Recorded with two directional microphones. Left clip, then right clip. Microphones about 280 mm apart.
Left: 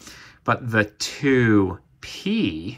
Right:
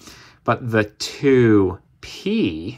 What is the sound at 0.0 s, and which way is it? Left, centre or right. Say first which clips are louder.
Speech: right 3 dB; right.